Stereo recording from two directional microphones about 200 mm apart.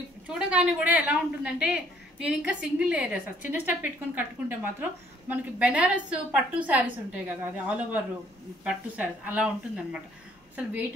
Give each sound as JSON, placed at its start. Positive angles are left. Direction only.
{"t": 0.3, "sound": "a woman's voice", "side_deg": -5}
{"t": 10.5, "sound": "a woman's voice", "side_deg": -10}